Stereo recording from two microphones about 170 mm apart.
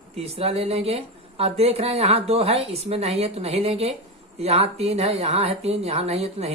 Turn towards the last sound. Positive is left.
turn(degrees=-35)  # may be behind; listen again after turning